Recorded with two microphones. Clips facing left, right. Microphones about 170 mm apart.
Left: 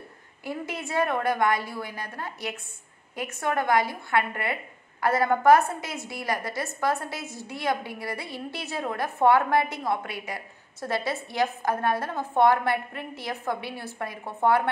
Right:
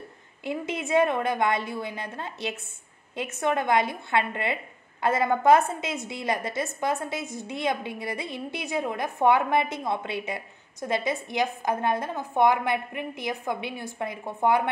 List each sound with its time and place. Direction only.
0.4 s a woman's voice: 20° right (ahead or behind)